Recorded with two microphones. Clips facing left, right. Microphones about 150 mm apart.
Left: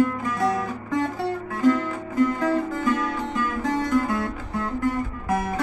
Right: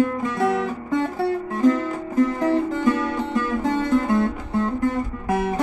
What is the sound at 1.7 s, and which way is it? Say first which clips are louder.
Music: left 1 dB; 30° right (ahead or behind).